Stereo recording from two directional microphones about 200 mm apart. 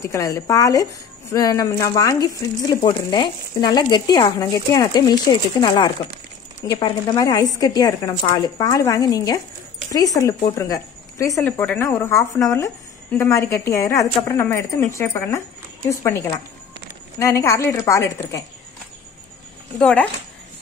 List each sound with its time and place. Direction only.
0.0 s speech: 15° left (ahead or behind)
19.8 s speech: 5° left (ahead or behind)